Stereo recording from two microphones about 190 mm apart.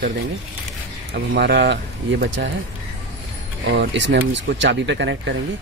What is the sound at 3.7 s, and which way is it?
Speech, 70° right (ahead or behind).